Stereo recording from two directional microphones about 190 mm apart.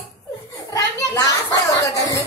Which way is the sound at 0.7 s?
15° left (ahead or behind).